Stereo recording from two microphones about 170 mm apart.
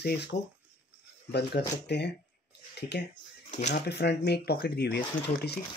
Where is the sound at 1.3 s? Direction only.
75° left (ahead or behind).